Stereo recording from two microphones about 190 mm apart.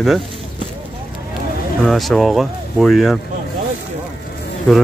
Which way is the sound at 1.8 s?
Centre (ahead or behind).